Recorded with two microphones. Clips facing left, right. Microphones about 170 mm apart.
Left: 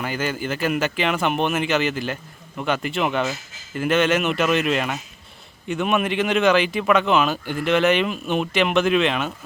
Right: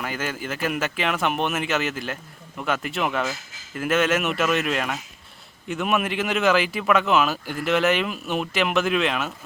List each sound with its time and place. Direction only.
0.0 s speech: centre (ahead or behind)